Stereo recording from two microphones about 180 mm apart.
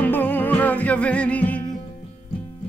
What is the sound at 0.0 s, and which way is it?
Music, 10° left (ahead or behind).